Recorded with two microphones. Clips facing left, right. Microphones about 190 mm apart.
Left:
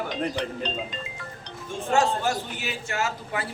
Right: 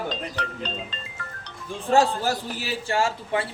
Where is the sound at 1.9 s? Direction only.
35° right (ahead or behind).